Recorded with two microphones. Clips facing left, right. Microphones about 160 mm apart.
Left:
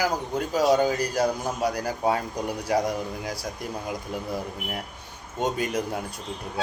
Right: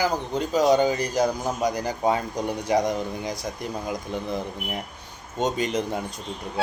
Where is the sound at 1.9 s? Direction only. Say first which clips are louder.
Right 1 dB; 5° left (ahead or behind).